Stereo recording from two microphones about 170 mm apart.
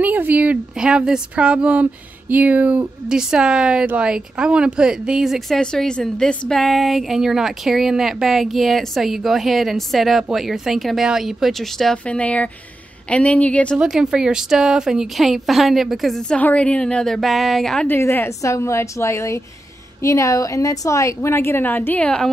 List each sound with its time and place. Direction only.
0.0 s a woman's voice: 10° right (ahead or behind); by 13.7 s 10° left (ahead or behind)
13.7 s a woman's voice: 5° right (ahead or behind)